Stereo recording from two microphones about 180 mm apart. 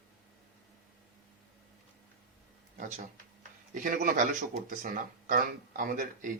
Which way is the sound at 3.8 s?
45° right (ahead or behind).